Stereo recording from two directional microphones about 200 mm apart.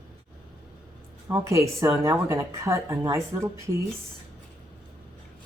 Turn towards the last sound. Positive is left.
turn(degrees=-15)  # may be behind; listen again after turning